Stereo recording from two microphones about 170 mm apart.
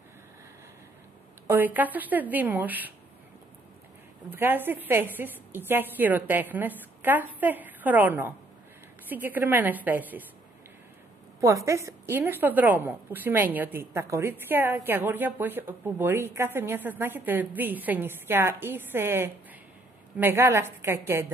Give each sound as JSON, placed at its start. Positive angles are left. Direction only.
{"t": 1.5, "sound": "a woman's voice", "side_deg": -10}
{"t": 4.3, "sound": "a woman's voice", "side_deg": -10}
{"t": 11.4, "sound": "a woman's voice", "side_deg": -15}